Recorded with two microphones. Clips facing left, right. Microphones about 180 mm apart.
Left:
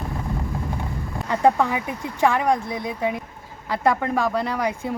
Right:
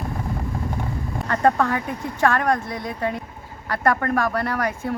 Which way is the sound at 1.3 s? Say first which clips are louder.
Left 1 dB; 10° left (ahead or behind).